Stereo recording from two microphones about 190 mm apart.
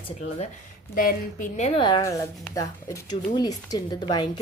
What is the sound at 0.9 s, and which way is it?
A woman's voice, 45° left (ahead or behind).